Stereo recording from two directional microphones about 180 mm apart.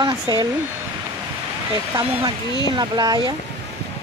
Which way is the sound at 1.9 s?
10° right (ahead or behind).